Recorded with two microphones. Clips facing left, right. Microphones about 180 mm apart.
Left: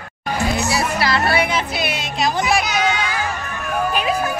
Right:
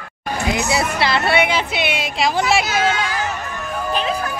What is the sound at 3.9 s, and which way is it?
Vehicle, 10° left (ahead or behind).